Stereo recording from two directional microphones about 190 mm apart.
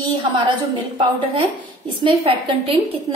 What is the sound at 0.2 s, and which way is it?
Speech, 25° right (ahead or behind).